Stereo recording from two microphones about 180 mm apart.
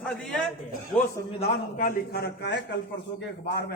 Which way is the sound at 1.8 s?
55° left (ahead or behind).